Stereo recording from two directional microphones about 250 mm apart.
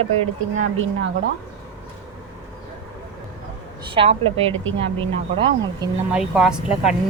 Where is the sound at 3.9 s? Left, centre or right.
Right.